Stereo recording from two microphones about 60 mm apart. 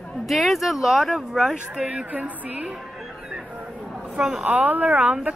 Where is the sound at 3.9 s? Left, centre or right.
Centre.